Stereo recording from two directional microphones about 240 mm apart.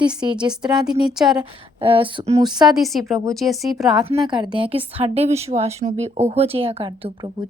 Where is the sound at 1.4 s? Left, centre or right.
Right.